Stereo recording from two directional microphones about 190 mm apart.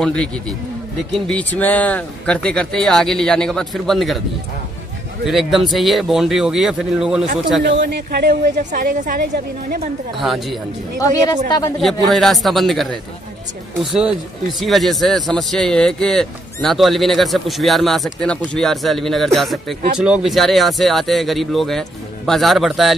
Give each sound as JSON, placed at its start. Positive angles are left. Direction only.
{"t": 0.0, "sound": "speech", "side_deg": 5}
{"t": 5.2, "sound": "speech", "side_deg": 0}
{"t": 7.6, "sound": "a woman's voice", "side_deg": -65}
{"t": 10.1, "sound": "speech", "side_deg": 0}
{"t": 11.0, "sound": "speech", "side_deg": 20}
{"t": 12.1, "sound": "speech", "side_deg": 0}
{"t": 14.6, "sound": "speech", "side_deg": 0}